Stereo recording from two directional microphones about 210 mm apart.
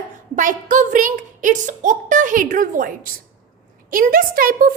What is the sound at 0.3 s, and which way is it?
A woman's voice, 35° right (ahead or behind).